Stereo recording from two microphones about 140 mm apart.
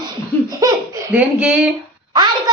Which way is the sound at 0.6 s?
25° right (ahead or behind).